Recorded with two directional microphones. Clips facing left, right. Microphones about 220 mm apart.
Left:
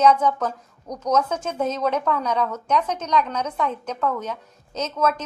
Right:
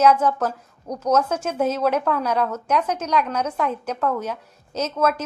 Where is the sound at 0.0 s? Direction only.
5° right (ahead or behind).